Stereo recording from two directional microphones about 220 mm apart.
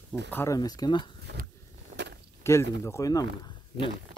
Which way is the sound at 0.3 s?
10° left (ahead or behind).